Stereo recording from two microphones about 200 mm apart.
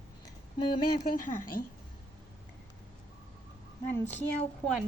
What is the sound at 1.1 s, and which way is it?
Speech, 45° left (ahead or behind).